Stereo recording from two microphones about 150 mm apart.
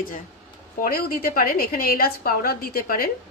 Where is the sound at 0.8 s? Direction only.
75° left (ahead or behind).